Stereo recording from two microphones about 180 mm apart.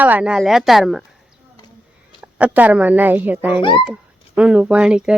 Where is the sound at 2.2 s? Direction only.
10° right (ahead or behind).